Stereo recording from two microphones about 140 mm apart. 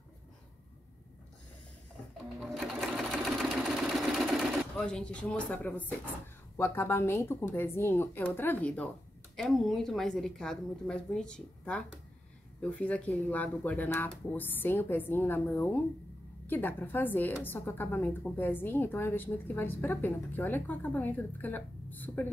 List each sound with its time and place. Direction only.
2.4 s sewing machine: centre (ahead or behind)
6.5 s a woman's voice: 15° left (ahead or behind)